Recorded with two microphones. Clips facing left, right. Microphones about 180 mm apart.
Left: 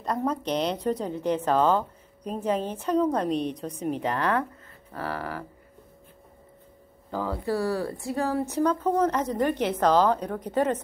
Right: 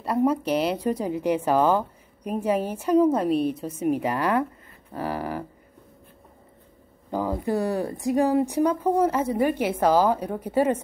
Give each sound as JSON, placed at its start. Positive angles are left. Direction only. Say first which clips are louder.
{"t": 0.0, "sound": "speech", "louder": "right 5 dB", "side_deg": -10}
{"t": 7.1, "sound": "speech", "louder": "right 3 dB", "side_deg": -15}